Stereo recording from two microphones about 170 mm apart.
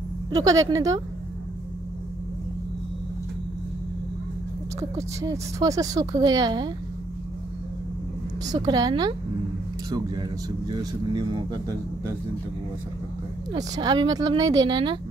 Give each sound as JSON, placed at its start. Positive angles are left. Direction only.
{"t": 0.3, "sound": "a woman's voice", "side_deg": -20}
{"t": 5.2, "sound": "a woman's voice", "side_deg": -20}
{"t": 8.5, "sound": "a woman's voice", "side_deg": -25}
{"t": 13.5, "sound": "a woman's voice", "side_deg": -25}